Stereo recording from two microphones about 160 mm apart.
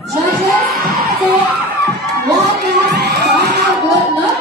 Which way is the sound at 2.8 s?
90° right.